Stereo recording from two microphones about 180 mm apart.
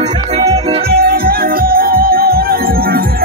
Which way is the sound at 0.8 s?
55° right (ahead or behind).